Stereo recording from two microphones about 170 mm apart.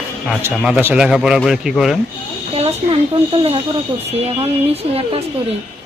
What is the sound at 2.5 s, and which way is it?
Speech, 35° right (ahead or behind).